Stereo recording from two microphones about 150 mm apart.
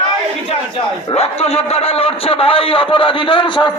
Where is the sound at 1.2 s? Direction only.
40° left (ahead or behind).